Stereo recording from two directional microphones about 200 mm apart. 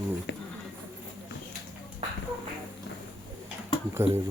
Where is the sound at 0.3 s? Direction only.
55° left (ahead or behind).